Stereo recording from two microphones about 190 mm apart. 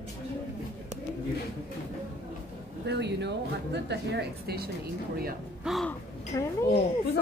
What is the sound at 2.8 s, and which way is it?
A woman's voice, 65° right (ahead or behind).